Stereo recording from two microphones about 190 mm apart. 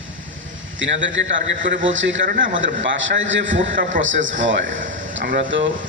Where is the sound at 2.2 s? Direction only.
50° right (ahead or behind).